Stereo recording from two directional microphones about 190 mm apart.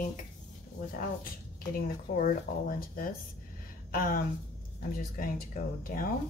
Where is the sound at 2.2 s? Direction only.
45° left (ahead or behind).